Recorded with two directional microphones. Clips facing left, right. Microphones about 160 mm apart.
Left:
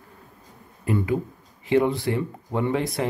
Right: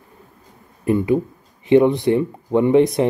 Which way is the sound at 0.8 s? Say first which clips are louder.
Right 7 dB; 20° right (ahead or behind).